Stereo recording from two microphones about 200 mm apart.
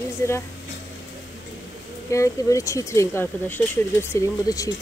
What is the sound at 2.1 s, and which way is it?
Speech, 15° left (ahead or behind).